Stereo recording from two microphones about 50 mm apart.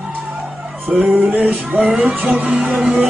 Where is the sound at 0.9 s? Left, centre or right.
Right.